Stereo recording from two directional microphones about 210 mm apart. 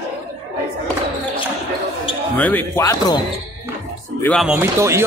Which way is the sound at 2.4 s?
10° left (ahead or behind).